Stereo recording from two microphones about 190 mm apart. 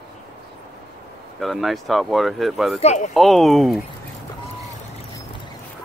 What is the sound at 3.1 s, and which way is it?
Speech, centre (ahead or behind).